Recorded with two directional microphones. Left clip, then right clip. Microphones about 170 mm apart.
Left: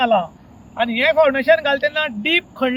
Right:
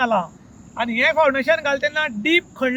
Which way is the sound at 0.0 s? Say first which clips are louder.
Left 3 dB; 10° right (ahead or behind).